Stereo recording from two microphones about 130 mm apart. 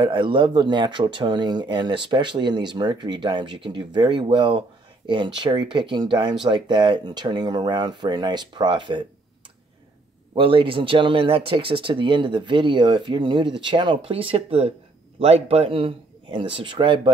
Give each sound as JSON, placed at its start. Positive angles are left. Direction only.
{"t": 0.0, "sound": "speech", "side_deg": -35}
{"t": 10.3, "sound": "speech", "side_deg": -40}